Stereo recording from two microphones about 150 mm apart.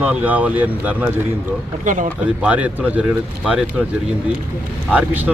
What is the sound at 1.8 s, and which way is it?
Speech, 60° right (ahead or behind).